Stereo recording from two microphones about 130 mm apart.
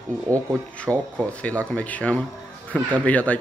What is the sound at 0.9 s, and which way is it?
Speech, 20° right (ahead or behind).